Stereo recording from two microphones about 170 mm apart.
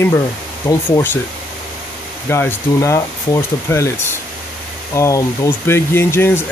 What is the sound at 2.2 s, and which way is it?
Speech, 15° left (ahead or behind).